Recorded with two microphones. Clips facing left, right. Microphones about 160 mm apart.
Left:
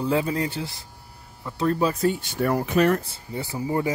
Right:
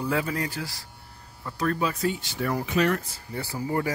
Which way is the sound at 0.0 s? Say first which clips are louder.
Left 4 dB; 25° left (ahead or behind).